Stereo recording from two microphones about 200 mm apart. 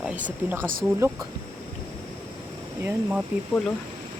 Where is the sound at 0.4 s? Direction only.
10° right (ahead or behind).